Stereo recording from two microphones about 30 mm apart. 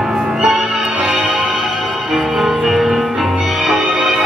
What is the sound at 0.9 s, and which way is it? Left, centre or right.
Music, right.